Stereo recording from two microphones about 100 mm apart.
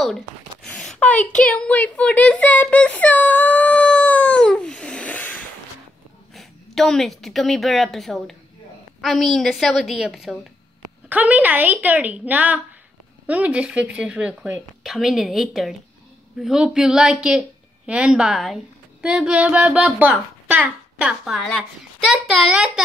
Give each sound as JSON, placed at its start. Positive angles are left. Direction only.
{"t": 0.7, "sound": "a sound", "side_deg": 10}
{"t": 6.3, "sound": "a woman's voice", "side_deg": 5}
{"t": 11.1, "sound": "a woman's voice", "side_deg": -15}
{"t": 14.8, "sound": "a woman's voice", "side_deg": 0}